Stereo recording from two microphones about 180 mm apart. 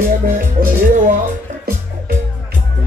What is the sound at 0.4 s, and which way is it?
Music, 45° right (ahead or behind).